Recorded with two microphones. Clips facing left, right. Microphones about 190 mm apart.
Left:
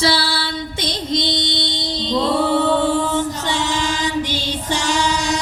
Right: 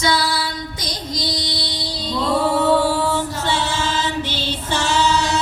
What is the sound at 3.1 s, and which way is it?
Female singing, 15° left (ahead or behind).